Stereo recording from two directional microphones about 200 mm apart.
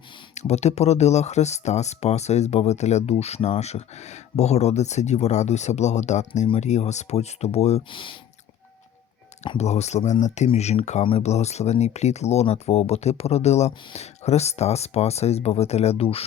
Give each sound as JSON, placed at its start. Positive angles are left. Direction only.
{"t": 0.3, "sound": "speech", "side_deg": 35}
{"t": 9.4, "sound": "speech", "side_deg": 35}